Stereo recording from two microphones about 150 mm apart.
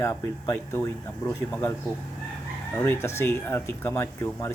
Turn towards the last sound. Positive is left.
turn(degrees=15)  # may be behind; listen again after turning